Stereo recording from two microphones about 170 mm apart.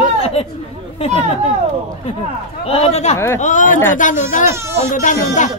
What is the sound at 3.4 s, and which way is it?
Speech, 50° left (ahead or behind).